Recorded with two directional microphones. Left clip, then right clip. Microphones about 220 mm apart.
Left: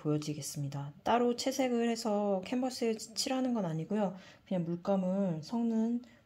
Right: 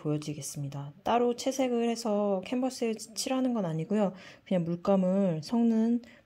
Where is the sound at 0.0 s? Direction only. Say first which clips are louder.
Right 1 dB; 20° right (ahead or behind).